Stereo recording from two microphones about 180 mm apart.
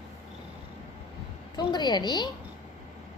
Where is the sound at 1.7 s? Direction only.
25° left (ahead or behind).